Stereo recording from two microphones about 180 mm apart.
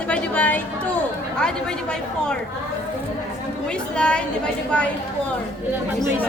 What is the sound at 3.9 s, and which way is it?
Speech, 5° left (ahead or behind).